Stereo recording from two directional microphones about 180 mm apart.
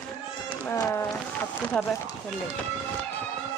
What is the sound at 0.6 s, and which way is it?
Speech, 15° left (ahead or behind).